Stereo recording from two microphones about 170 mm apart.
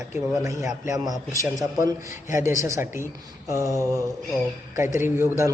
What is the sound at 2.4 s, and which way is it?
A man's voice, 15° right (ahead or behind).